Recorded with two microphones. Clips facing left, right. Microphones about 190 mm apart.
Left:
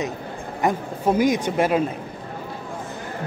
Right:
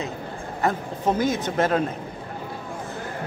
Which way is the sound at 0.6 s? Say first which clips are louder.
Left 2 dB; 10° left (ahead or behind).